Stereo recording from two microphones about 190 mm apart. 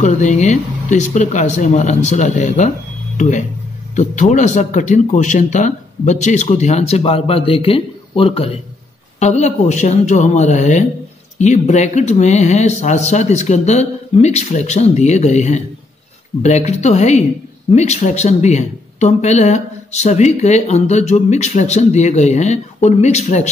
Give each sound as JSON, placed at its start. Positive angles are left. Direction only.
{"t": 0.0, "sound": "speech", "side_deg": 40}